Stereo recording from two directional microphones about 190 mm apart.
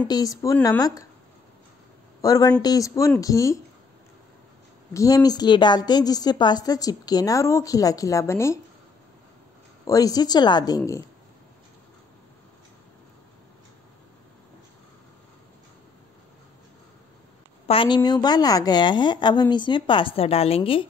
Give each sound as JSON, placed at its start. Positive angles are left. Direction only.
{"t": 0.1, "sound": "a woman's voice", "side_deg": 20}
{"t": 2.2, "sound": "a woman's voice", "side_deg": 20}
{"t": 4.9, "sound": "a woman's voice", "side_deg": 20}
{"t": 9.8, "sound": "a woman's voice", "side_deg": 20}
{"t": 17.6, "sound": "a woman's voice", "side_deg": 25}